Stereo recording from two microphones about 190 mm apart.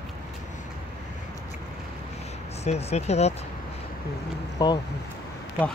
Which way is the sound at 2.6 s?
35° left (ahead or behind).